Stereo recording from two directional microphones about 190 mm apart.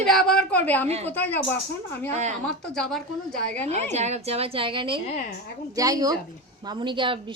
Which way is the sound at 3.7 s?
35° right (ahead or behind).